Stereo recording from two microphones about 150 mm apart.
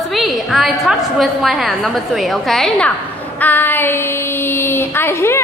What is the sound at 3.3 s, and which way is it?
Speech, 10° left (ahead or behind).